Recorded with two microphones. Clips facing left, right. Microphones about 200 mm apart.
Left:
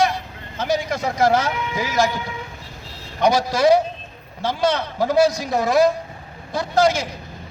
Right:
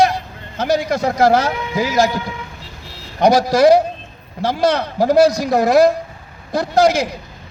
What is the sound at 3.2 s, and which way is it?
A man's voice, 35° right (ahead or behind).